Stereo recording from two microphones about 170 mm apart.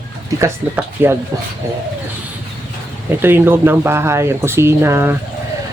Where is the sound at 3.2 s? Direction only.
10° right (ahead or behind).